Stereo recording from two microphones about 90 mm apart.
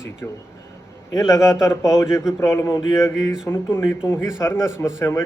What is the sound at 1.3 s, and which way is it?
A man's voice, 35° left (ahead or behind).